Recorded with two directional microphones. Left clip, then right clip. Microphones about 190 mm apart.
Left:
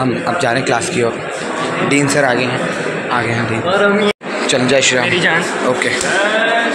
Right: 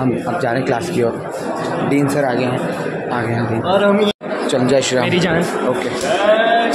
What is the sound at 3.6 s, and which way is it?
Speech, 90° right.